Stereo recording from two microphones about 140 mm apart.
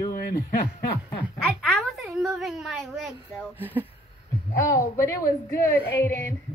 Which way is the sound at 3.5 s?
15° right (ahead or behind).